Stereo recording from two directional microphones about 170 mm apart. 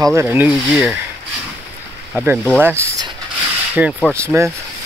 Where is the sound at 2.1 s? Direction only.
10° right (ahead or behind).